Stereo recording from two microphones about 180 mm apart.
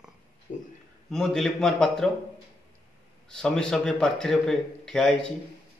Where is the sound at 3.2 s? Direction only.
5° left (ahead or behind).